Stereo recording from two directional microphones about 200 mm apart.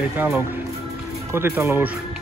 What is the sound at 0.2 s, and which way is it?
Speech, 10° right (ahead or behind).